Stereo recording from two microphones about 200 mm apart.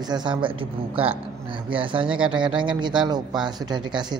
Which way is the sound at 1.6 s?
25° right (ahead or behind).